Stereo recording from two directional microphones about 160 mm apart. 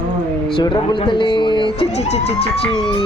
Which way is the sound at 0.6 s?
30° left (ahead or behind).